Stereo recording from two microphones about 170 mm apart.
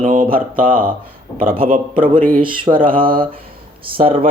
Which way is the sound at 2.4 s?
30° right (ahead or behind).